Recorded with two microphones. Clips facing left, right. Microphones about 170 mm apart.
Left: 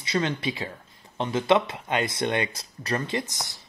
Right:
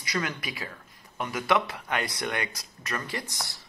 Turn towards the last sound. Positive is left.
turn(degrees=20)  # may be behind; listen again after turning